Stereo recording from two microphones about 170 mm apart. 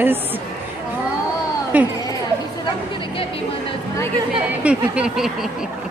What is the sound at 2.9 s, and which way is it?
Chatter, 30° left (ahead or behind).